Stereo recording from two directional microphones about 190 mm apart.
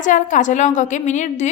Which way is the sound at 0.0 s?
40° left (ahead or behind).